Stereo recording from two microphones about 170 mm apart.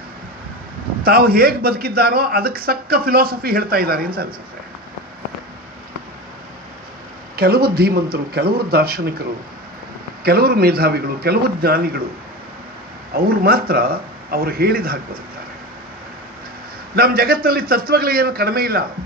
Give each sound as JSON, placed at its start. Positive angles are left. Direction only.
{"t": 1.0, "sound": "speech", "side_deg": -60}
{"t": 7.3, "sound": "speech", "side_deg": -65}
{"t": 10.2, "sound": "a man's voice", "side_deg": -70}
{"t": 13.1, "sound": "speech", "side_deg": -60}
{"t": 16.9, "sound": "speech", "side_deg": -60}